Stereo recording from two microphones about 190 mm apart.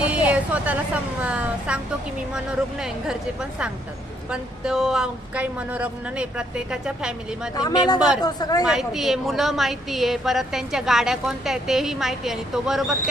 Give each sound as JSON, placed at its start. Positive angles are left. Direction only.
{"t": 0.0, "sound": "a woman's voice", "side_deg": -5}
{"t": 4.3, "sound": "a woman's voice", "side_deg": -5}
{"t": 7.5, "sound": "speech", "side_deg": 20}
{"t": 7.9, "sound": "a woman's voice", "side_deg": -5}
{"t": 8.2, "sound": "speech", "side_deg": 20}
{"t": 8.6, "sound": "a woman's voice", "side_deg": 0}